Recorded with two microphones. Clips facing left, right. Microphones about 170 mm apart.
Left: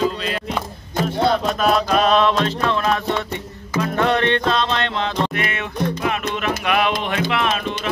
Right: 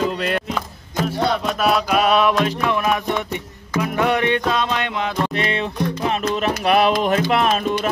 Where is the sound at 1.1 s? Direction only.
5° right (ahead or behind).